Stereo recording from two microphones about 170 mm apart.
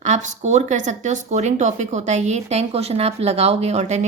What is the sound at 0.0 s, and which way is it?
A woman's voice, 45° right (ahead or behind).